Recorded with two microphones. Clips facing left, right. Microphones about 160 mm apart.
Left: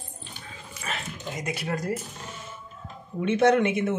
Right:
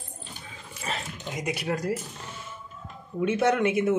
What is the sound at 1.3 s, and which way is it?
Speech, 15° right (ahead or behind).